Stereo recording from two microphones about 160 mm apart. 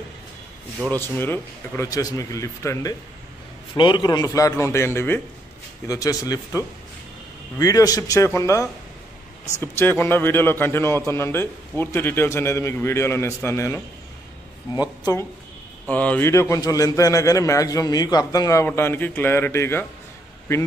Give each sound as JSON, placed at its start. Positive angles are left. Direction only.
{"t": 0.8, "sound": "a man's voice", "side_deg": 15}
{"t": 15.9, "sound": "a man's voice", "side_deg": 10}